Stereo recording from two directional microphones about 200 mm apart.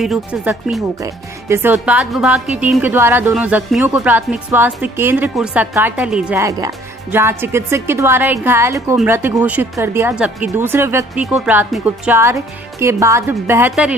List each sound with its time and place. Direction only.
0.0 s a woman's voice: centre (ahead or behind)